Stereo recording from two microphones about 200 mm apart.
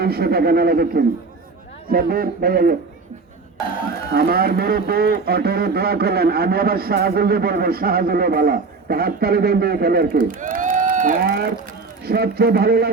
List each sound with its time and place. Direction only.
0.0 s speech: 50° right (ahead or behind)
4.1 s speech: 50° right (ahead or behind)